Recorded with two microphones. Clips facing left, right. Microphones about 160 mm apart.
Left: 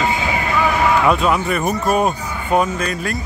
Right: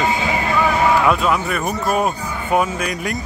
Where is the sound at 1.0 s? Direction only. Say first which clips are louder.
Left 1 dB; centre (ahead or behind); by 3.2 s 15° right (ahead or behind).